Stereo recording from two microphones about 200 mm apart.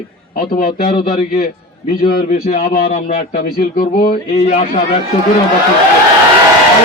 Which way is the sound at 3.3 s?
50° left (ahead or behind).